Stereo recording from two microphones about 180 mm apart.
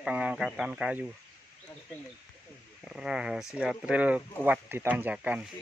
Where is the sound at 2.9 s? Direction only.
5° right (ahead or behind).